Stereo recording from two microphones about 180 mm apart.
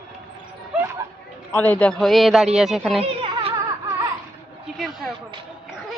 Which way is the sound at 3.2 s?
30° right (ahead or behind).